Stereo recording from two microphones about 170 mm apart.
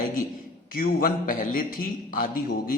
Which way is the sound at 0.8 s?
55° left (ahead or behind).